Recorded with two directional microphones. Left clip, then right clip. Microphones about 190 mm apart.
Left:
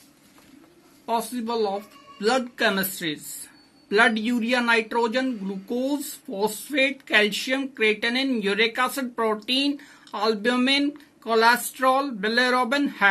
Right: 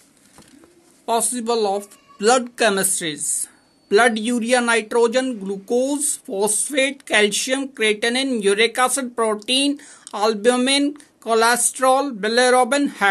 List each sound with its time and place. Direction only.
1.0 s speech: 50° right (ahead or behind)